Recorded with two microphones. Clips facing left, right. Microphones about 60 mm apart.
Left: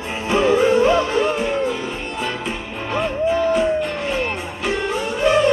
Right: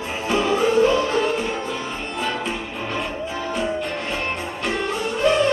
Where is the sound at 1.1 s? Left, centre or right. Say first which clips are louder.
Left 2 dB; centre.